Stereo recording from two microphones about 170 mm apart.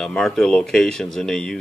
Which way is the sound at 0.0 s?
5° left (ahead or behind).